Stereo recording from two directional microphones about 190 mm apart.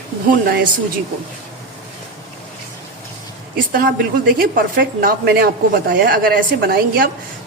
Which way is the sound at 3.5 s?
50° right (ahead or behind).